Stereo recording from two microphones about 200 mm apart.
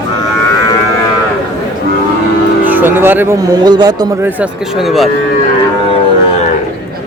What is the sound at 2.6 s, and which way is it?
Speech, 10° right (ahead or behind).